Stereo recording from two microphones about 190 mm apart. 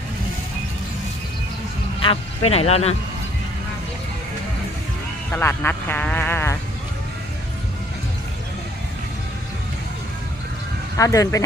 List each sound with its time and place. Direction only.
2.0 s speech: 30° left (ahead or behind)
5.3 s speech: 10° left (ahead or behind)
10.9 s speech: 15° left (ahead or behind)